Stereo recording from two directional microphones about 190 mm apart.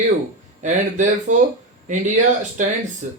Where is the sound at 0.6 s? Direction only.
40° right (ahead or behind).